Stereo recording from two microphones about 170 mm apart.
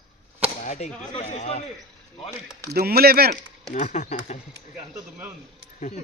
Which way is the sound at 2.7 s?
65° right (ahead or behind).